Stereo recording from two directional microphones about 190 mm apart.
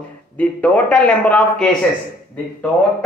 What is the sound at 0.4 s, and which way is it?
A man's voice, 5° left (ahead or behind).